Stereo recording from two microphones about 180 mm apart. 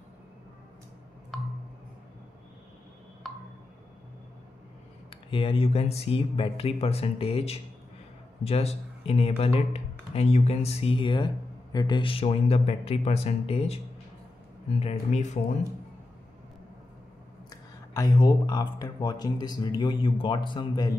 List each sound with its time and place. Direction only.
1.3 s a sound: centre (ahead or behind)
5.3 s speech: 30° left (ahead or behind)
14.8 s speech: 40° left (ahead or behind)
17.5 s speech: 20° left (ahead or behind)